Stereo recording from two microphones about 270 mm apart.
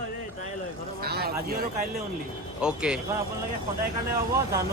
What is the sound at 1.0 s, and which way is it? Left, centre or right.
Vehicle, right.